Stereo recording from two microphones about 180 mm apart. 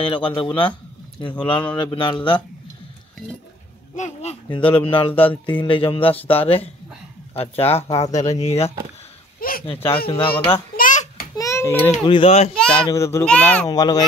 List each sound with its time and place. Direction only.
0.1 s speech: 30° left (ahead or behind)
3.9 s speech: 40° left (ahead or behind)
9.4 s speech: 55° left (ahead or behind)
9.7 s speech: 30° left (ahead or behind)
10.8 s a sound: 50° left (ahead or behind)
11.3 s a child's voice: 15° left (ahead or behind)
12.1 s speech: 30° left (ahead or behind)
12.9 s a child's voice: 15° left (ahead or behind)
13.7 s speech: 20° left (ahead or behind)